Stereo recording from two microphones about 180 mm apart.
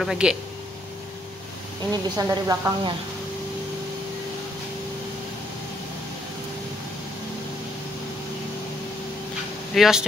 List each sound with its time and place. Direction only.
0.0 s speech: 5° right (ahead or behind)
1.9 s speech: 20° right (ahead or behind)
9.8 s speech: 5° right (ahead or behind)